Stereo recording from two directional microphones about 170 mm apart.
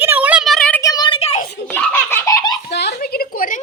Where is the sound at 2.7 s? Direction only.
80° left.